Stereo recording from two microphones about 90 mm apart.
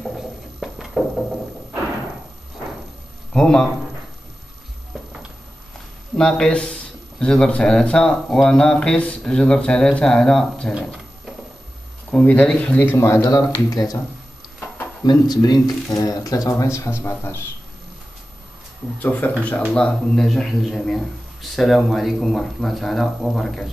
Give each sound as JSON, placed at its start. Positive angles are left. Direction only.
{"t": 0.6, "sound": "music", "side_deg": 0}
{"t": 3.3, "sound": "speech", "side_deg": 10}
{"t": 6.1, "sound": "speech", "side_deg": 10}
{"t": 12.1, "sound": "speech", "side_deg": 15}
{"t": 12.9, "sound": "speech", "side_deg": 30}
{"t": 15.0, "sound": "speech", "side_deg": 50}
{"t": 18.9, "sound": "speech", "side_deg": 20}
{"t": 19.7, "sound": "speech", "side_deg": 10}